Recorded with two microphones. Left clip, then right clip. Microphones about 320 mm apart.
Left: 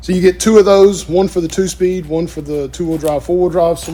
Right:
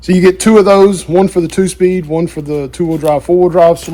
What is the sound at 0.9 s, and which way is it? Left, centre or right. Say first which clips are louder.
Speech: right 3 dB; right.